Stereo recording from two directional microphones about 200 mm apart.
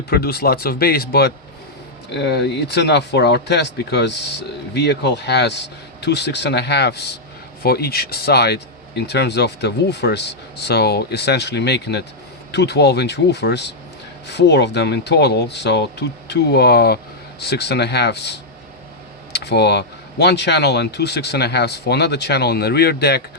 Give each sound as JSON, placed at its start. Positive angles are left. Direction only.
{"t": 0.1, "sound": "speech", "side_deg": 50}